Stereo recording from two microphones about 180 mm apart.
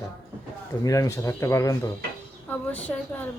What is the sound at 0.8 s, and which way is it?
Speech, 20° left (ahead or behind).